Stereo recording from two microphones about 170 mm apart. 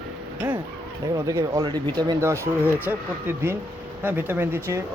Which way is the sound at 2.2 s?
15° right (ahead or behind).